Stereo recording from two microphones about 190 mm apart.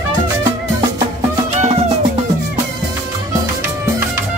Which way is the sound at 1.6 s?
35° right (ahead or behind).